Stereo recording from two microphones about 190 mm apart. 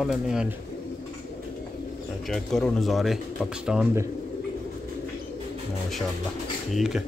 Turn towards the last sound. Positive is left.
turn(degrees=0)  # may be behind; listen again after turning